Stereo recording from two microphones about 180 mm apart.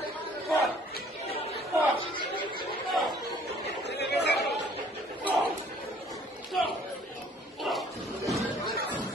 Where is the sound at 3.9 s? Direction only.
70° left (ahead or behind).